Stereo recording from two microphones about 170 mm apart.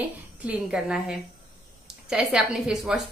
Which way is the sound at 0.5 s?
5° right (ahead or behind).